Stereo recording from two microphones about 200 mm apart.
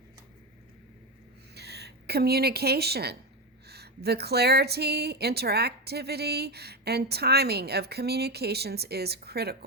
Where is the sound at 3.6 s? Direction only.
55° right (ahead or behind).